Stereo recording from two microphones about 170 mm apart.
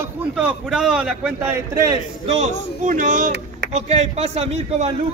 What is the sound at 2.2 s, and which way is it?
Speech, 40° right (ahead or behind).